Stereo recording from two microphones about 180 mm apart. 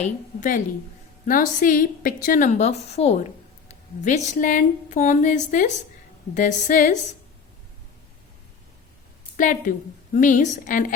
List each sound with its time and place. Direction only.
0.0 s speech: 45° left (ahead or behind)
9.4 s speech: 45° left (ahead or behind)